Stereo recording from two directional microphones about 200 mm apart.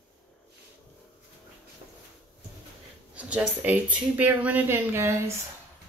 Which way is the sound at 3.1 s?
5° right (ahead or behind).